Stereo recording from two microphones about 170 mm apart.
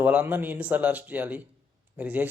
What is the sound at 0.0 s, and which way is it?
Speech, 10° right (ahead or behind).